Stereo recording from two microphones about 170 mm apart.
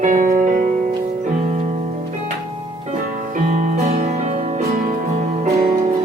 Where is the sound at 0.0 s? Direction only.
50° right (ahead or behind).